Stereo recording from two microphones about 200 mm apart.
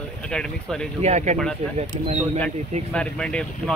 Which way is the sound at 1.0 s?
35° right (ahead or behind).